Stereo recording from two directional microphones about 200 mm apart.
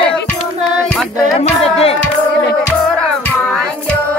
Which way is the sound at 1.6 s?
30° left (ahead or behind).